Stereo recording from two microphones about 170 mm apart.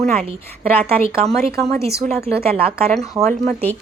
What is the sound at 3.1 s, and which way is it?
Speech, 20° right (ahead or behind).